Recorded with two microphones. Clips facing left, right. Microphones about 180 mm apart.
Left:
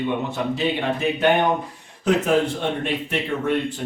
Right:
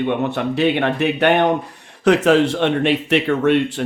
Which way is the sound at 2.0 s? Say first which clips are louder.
Right 5 dB; 85° right.